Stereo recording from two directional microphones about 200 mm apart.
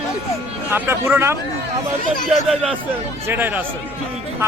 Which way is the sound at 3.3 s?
10° right (ahead or behind).